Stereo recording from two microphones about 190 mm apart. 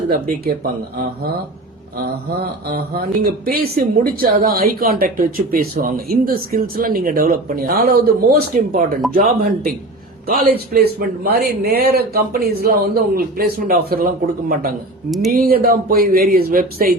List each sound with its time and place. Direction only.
0.1 s speech: 50° right (ahead or behind)
2.4 s speech: 50° right (ahead or behind)